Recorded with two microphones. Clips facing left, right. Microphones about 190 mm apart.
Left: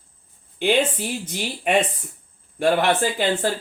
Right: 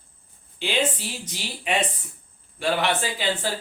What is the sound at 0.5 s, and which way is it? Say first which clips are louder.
Speech: left 6 dB; 55° left (ahead or behind).